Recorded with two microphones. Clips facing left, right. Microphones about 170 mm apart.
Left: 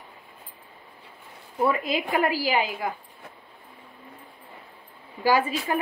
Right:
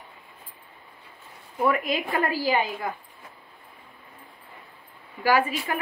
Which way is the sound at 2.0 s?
15° left (ahead or behind).